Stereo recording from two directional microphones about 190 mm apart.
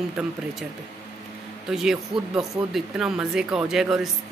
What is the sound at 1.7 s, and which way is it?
A woman's voice, centre (ahead or behind).